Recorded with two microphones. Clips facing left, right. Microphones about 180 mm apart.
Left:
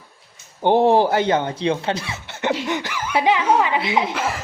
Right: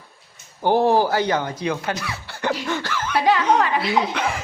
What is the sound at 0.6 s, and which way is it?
Speech, 20° left (ahead or behind).